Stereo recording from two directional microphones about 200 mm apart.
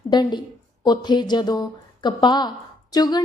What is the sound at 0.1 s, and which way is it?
A woman's voice, 20° left (ahead or behind).